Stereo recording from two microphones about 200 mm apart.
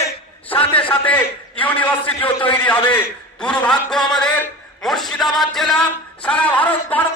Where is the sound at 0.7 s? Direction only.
5° left (ahead or behind).